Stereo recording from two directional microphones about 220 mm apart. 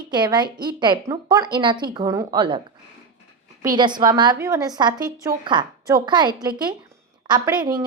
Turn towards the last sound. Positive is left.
turn(degrees=-20)  # may be behind; listen again after turning